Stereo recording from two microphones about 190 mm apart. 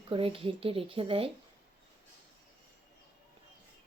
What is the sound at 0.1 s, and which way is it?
Speech, 30° right (ahead or behind).